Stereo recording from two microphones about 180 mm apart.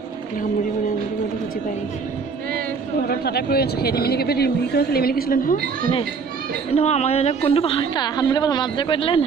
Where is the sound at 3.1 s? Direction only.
60° left (ahead or behind).